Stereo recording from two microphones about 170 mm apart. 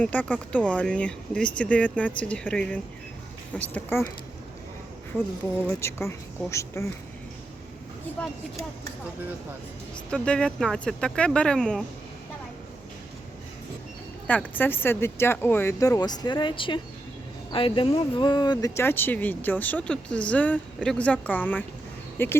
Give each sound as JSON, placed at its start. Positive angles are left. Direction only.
{"t": 0.0, "sound": "speech", "side_deg": 10}
{"t": 5.8, "sound": "speech", "side_deg": 15}
{"t": 10.1, "sound": "speech", "side_deg": 5}
{"t": 14.3, "sound": "speech", "side_deg": 10}